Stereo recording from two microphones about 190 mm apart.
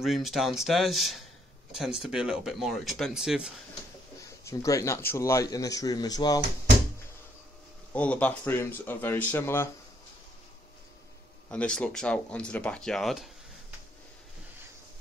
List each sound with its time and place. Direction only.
0.0 s speech: centre (ahead or behind)
4.5 s speech: 15° left (ahead or behind)
7.9 s speech: 5° left (ahead or behind)
11.5 s speech: 5° left (ahead or behind)